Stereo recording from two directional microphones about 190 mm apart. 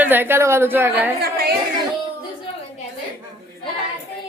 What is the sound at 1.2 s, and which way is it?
Chatter, 55° right (ahead or behind).